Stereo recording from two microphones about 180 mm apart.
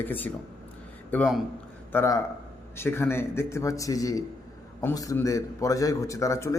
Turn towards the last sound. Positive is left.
turn(degrees=15)  # may be behind; listen again after turning